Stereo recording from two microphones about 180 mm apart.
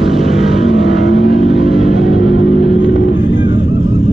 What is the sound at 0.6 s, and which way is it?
Vehicle, 80° left.